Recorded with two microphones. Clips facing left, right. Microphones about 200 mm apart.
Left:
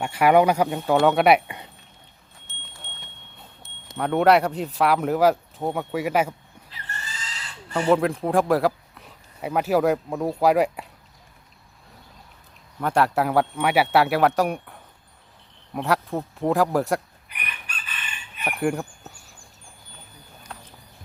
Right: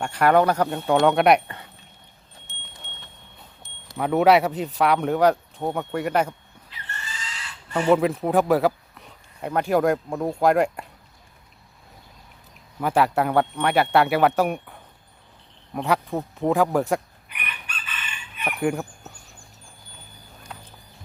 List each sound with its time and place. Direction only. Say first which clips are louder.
0.0 s speech: left 1 dB; 10° left (ahead or behind)
2.5 s wind chime: left 1 dB; 15° right (ahead or behind)
3.9 s speech: right 1 dB; centre (ahead or behind)
6.7 s a sound: even; 35° left (ahead or behind)
7.7 s speech: right 1 dB; centre (ahead or behind)
12.8 s speech: right 1 dB; 5° right (ahead or behind)
17.2 s chicken: right 1 dB; 40° left (ahead or behind)
18.4 s speech: even; centre (ahead or behind)
20.5 s a sound: even; 5° right (ahead or behind)